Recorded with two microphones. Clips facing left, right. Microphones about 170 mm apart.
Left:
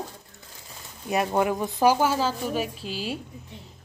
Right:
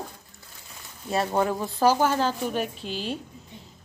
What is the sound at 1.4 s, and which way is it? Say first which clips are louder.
Speech: left 1 dB; 15° left (ahead or behind).